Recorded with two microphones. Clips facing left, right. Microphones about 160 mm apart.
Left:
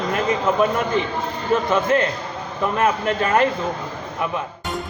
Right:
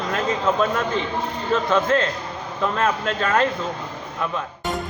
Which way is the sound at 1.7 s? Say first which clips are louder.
Right 1 dB; 15° left (ahead or behind).